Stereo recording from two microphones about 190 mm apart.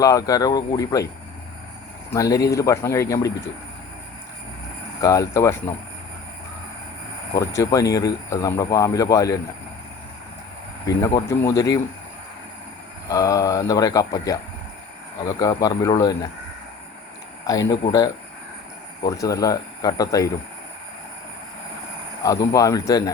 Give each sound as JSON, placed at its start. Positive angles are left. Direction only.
{"t": 0.0, "sound": "speech", "side_deg": 20}
{"t": 2.0, "sound": "speech", "side_deg": 15}
{"t": 4.9, "sound": "speech", "side_deg": 15}
{"t": 7.3, "sound": "speech", "side_deg": 15}
{"t": 10.8, "sound": "speech", "side_deg": 15}
{"t": 13.1, "sound": "speech", "side_deg": 20}
{"t": 17.4, "sound": "speech", "side_deg": 20}
{"t": 19.0, "sound": "speech", "side_deg": 20}
{"t": 22.2, "sound": "speech", "side_deg": 20}